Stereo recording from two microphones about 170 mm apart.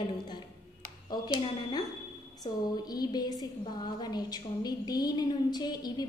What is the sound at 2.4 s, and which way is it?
A woman's voice, 20° left (ahead or behind).